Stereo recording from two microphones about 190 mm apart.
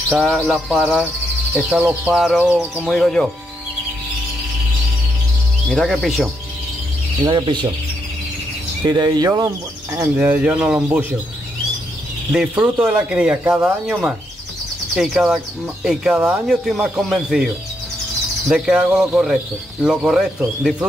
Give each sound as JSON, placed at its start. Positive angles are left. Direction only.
{"t": 0.1, "sound": "speech", "side_deg": 0}
{"t": 5.7, "sound": "speech", "side_deg": 0}
{"t": 7.2, "sound": "speech", "side_deg": -25}
{"t": 8.8, "sound": "speech", "side_deg": -20}
{"t": 12.3, "sound": "speech", "side_deg": -5}
{"t": 18.5, "sound": "speech", "side_deg": -5}